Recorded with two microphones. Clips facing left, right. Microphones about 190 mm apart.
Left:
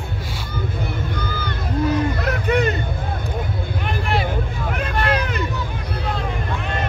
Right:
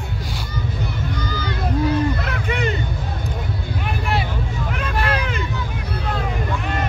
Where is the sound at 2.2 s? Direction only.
40° left (ahead or behind).